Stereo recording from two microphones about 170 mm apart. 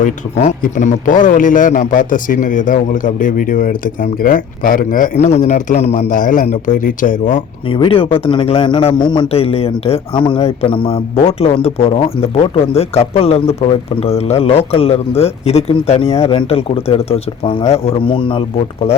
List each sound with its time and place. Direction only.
0.0 s a man's voice: 45° left (ahead or behind)
7.7 s a man's voice: 30° left (ahead or behind)